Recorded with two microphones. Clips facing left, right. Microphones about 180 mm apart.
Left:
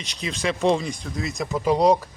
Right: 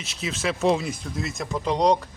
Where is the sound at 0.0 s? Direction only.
5° right (ahead or behind).